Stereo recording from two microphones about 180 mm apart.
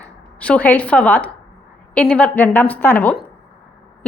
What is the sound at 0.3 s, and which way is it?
Speech, 5° left (ahead or behind).